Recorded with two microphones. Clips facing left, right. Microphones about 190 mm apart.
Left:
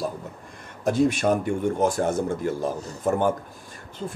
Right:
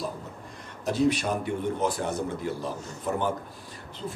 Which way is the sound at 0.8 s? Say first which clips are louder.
Left 4 dB; 50° left (ahead or behind).